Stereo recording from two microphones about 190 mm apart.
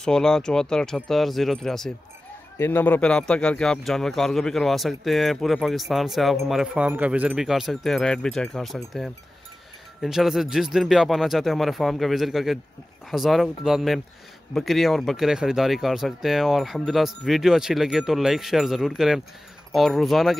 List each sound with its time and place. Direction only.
0.0 s speech: 5° left (ahead or behind)